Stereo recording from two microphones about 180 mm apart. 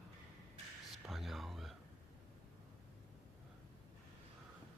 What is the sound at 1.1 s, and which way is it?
Whispering, centre (ahead or behind).